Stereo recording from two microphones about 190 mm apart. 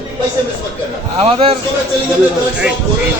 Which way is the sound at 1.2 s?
30° right (ahead or behind).